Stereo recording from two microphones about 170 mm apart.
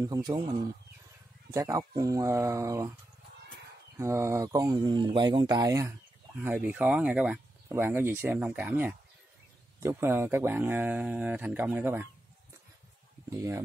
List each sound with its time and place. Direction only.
0.0 s speech: 20° right (ahead or behind)
1.5 s speech: 20° right (ahead or behind)
4.0 s speech: 15° right (ahead or behind)
13.3 s speech: 15° right (ahead or behind)